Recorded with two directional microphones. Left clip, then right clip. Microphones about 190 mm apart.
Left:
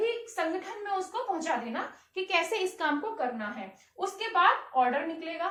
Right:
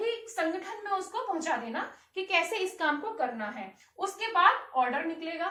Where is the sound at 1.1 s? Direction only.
10° left (ahead or behind).